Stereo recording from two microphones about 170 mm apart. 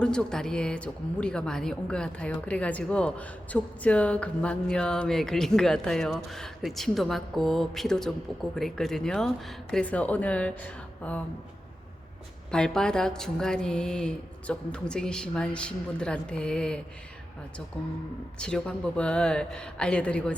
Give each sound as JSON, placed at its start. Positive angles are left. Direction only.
{"t": 0.0, "sound": "a woman's voice", "side_deg": 5}
{"t": 12.5, "sound": "a woman's voice", "side_deg": 5}
{"t": 18.3, "sound": "a woman's voice", "side_deg": 5}